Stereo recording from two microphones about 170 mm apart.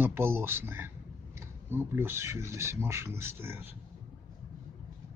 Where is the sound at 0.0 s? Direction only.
15° right (ahead or behind).